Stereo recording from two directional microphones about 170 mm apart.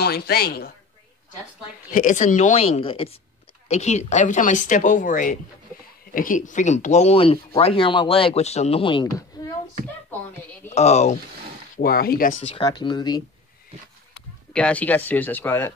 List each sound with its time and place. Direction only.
0.0 s a woman's voice: 65° left (ahead or behind)
1.9 s speech: 50° left (ahead or behind); by 9.2 s 25° left (ahead or behind)
10.7 s speech: 40° left (ahead or behind)
11.7 s speech: 60° left (ahead or behind)
12.4 s speech: 35° left (ahead or behind)
14.5 s speech: 5° left (ahead or behind)